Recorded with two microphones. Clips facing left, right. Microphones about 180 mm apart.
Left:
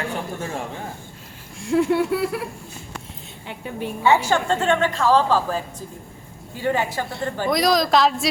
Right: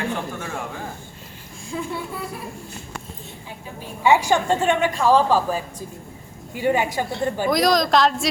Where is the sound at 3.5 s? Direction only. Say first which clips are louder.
Left 9 dB; 65° left (ahead or behind).